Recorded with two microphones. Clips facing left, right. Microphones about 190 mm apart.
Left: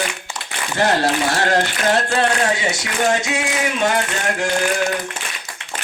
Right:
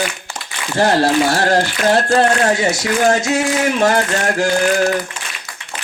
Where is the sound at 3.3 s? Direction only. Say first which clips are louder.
Right 6 dB; 45° right (ahead or behind).